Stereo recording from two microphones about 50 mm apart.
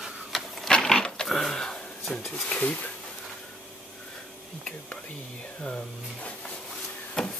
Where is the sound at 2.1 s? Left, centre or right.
Centre.